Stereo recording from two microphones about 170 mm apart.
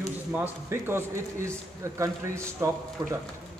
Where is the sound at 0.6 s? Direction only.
15° right (ahead or behind).